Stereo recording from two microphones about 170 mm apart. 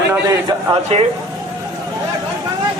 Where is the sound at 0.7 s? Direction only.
35° right (ahead or behind).